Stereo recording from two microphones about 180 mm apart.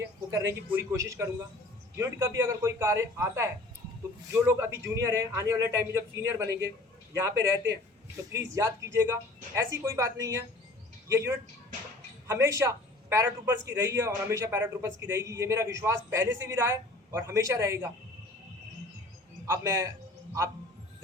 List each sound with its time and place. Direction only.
0.0 s a man's voice: 15° right (ahead or behind)
19.5 s a man's voice: 15° right (ahead or behind)